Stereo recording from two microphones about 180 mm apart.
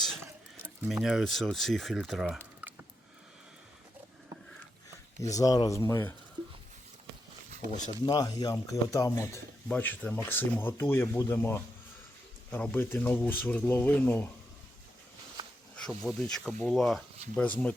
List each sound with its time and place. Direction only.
0.2 s stir: 15° right (ahead or behind)
0.9 s speech: centre (ahead or behind)
2.6 s a sound: 10° right (ahead or behind)
5.3 s speech: 20° left (ahead or behind)
7.9 s speech: 20° left (ahead or behind)
15.7 s speech: 5° left (ahead or behind)